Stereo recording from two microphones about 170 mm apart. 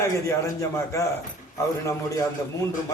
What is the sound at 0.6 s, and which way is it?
Speech, 20° left (ahead or behind).